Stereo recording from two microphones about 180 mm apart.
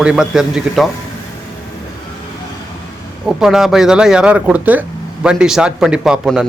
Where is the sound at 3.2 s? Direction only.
5° right (ahead or behind).